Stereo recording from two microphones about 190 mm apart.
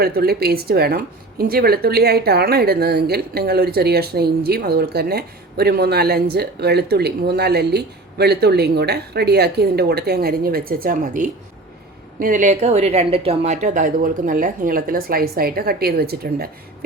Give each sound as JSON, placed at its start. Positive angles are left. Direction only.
{"t": 0.0, "sound": "a woman's voice", "side_deg": -55}